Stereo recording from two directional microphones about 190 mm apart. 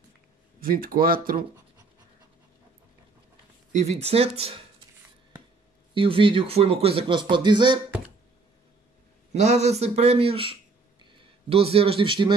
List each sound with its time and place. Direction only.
0.6 s speech: 50° right (ahead or behind)
3.7 s speech: 35° right (ahead or behind)
5.9 s speech: 25° right (ahead or behind)
9.3 s speech: 35° right (ahead or behind)